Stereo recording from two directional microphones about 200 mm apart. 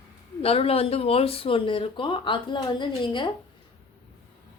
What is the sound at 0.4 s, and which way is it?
A woman's voice, 30° left (ahead or behind).